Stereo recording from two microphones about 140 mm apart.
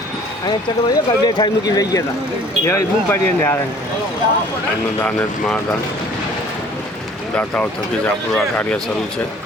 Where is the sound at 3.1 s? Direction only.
15° left (ahead or behind).